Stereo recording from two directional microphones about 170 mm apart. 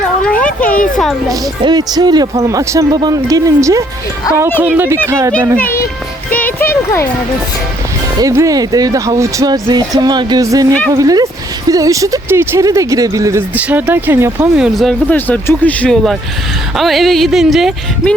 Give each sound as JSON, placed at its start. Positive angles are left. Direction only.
{"t": 0.2, "sound": "a sound", "side_deg": 5}
{"t": 1.3, "sound": "speech", "side_deg": -25}
{"t": 6.3, "sound": "a sound", "side_deg": 10}
{"t": 8.2, "sound": "speech", "side_deg": -20}
{"t": 13.6, "sound": "speech", "side_deg": -10}
{"t": 15.1, "sound": "speech", "side_deg": 10}